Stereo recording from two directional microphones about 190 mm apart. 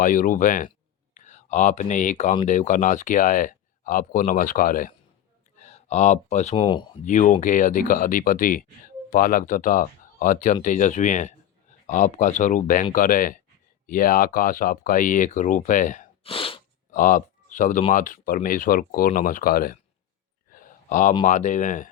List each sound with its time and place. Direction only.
0.0 s speech: 45° left (ahead or behind); by 6.8 s 25° left (ahead or behind)
7.0 s speech: 40° left (ahead or behind)
16.2 s sneeze: 30° left (ahead or behind)
16.9 s speech: 45° left (ahead or behind)
20.5 s a sound: 45° left (ahead or behind)
21.2 s speech: 40° left (ahead or behind)